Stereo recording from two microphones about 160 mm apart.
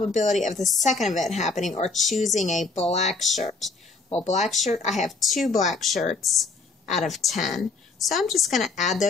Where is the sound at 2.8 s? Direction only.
45° left (ahead or behind).